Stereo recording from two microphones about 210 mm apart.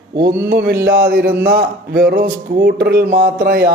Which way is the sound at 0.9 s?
45° right (ahead or behind).